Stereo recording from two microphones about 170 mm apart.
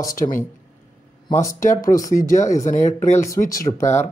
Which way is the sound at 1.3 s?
20° left (ahead or behind).